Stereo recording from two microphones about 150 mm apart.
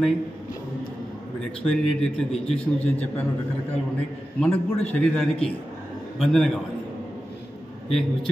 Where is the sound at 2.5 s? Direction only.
10° left (ahead or behind).